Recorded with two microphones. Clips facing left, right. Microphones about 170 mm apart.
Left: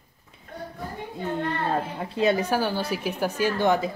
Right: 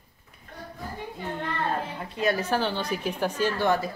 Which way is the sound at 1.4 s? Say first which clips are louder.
Left 1 dB; 30° left (ahead or behind).